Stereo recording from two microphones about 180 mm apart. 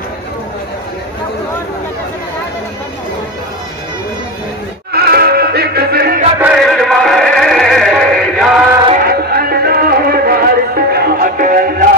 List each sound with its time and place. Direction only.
4.9 s music: 60° right (ahead or behind)
6.4 s music: 5° right (ahead or behind)
9.0 s music: 55° right (ahead or behind)